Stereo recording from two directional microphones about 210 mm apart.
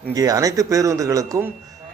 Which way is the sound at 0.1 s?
15° right (ahead or behind).